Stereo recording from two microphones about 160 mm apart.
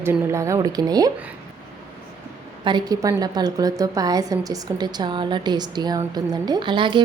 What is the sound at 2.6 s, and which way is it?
A woman's voice, 25° right (ahead or behind).